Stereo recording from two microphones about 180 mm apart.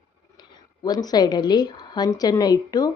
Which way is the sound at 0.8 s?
20° left (ahead or behind).